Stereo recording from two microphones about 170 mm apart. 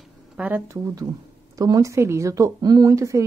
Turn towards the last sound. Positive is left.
turn(degrees=-20)  # may be behind; listen again after turning